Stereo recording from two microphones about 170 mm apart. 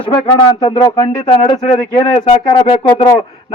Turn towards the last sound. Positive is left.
turn(degrees=30)  # may be behind; listen again after turning